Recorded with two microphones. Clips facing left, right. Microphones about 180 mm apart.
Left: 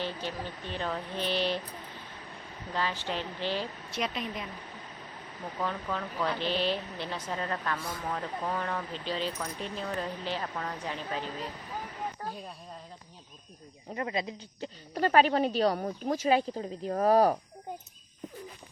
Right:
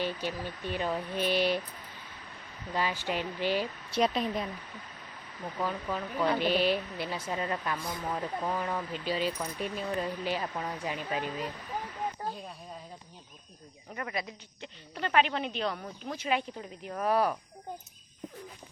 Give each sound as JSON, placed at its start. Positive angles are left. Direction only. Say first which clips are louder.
{"t": 0.0, "sound": "speech", "louder": "right 2 dB", "side_deg": -10}
{"t": 2.7, "sound": "speech", "louder": "right 1 dB", "side_deg": -10}
{"t": 3.9, "sound": "speech", "louder": "right 6 dB", "side_deg": -35}
{"t": 5.5, "sound": "speech", "louder": "even", "side_deg": -10}
{"t": 13.9, "sound": "speech", "louder": "left 4 dB", "side_deg": 25}
{"t": 14.6, "sound": "speech", "louder": "left 7 dB", "side_deg": 40}